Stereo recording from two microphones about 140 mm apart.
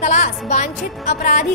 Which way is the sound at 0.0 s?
60° left (ahead or behind).